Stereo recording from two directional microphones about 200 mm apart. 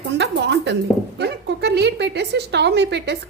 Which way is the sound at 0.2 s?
60° right (ahead or behind).